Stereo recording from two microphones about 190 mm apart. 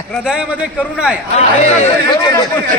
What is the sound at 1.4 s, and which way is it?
Speech, 30° left (ahead or behind).